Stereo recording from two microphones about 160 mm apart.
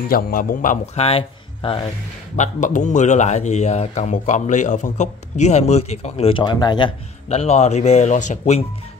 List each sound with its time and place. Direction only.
0.1 s a man's voice: 60° left (ahead or behind)
1.0 s speech: 35° left (ahead or behind)
2.3 s a man's voice: 50° left (ahead or behind); by 6.9 s 25° left (ahead or behind)
7.2 s a man's voice: 45° left (ahead or behind)